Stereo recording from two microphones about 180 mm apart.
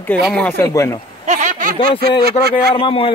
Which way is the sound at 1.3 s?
45° right (ahead or behind).